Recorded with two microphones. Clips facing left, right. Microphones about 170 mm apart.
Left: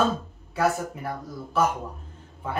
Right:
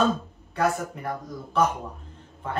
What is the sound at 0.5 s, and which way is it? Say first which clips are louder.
Speech: left 1 dB; 5° left (ahead or behind).